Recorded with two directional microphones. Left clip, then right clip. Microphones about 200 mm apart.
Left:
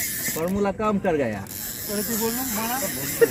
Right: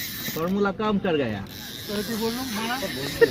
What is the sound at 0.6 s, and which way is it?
Speech, 20° right (ahead or behind).